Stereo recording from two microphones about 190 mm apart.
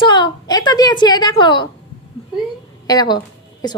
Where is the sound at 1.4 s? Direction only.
25° left (ahead or behind).